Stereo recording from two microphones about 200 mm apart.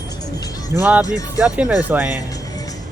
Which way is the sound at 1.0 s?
15° left (ahead or behind).